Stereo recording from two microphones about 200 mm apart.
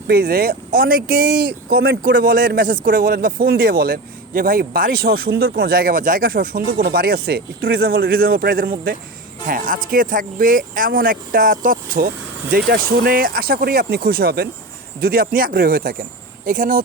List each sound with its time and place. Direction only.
0.1 s speech: 50° right (ahead or behind)